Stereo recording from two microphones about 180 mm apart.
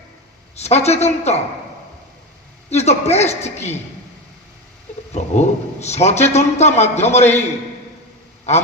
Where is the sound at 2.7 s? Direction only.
35° left (ahead or behind).